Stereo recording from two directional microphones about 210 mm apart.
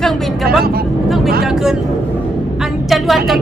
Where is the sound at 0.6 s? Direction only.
45° right (ahead or behind).